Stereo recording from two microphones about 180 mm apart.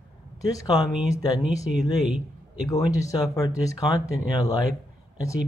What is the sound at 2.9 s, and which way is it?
Speech, 20° left (ahead or behind).